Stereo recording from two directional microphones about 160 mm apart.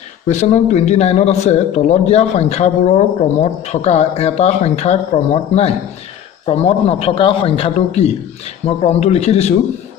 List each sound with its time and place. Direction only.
0.3 s a man's voice: 45° left (ahead or behind)